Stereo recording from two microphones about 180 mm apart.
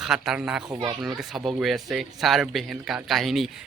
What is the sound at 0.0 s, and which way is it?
Speech, centre (ahead or behind).